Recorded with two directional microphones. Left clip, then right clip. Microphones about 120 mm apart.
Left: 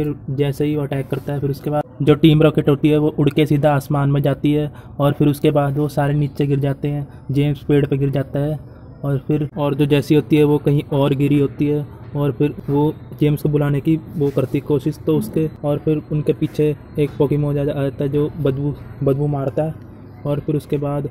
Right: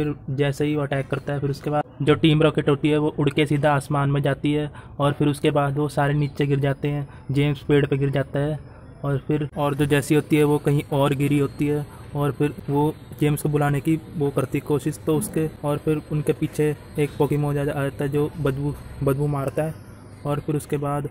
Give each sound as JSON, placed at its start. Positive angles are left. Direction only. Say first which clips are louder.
{"t": 0.0, "sound": "speech", "louder": "left 3 dB", "side_deg": 25}